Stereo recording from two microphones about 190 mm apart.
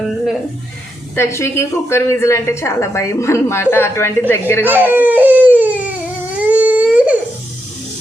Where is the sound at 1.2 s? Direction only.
15° left (ahead or behind).